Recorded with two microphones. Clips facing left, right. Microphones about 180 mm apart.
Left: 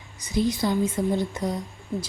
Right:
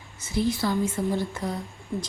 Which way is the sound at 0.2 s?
15° left (ahead or behind).